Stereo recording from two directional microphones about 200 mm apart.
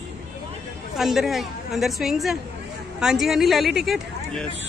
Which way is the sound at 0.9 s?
Centre (ahead or behind).